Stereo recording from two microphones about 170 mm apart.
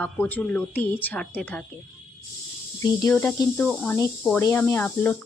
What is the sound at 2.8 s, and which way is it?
Speech, 20° left (ahead or behind).